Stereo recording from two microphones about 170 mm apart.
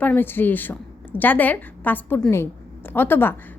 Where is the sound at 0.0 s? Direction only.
10° left (ahead or behind).